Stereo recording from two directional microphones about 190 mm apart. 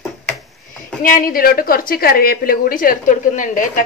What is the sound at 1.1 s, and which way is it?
A woman's voice, 50° left (ahead or behind).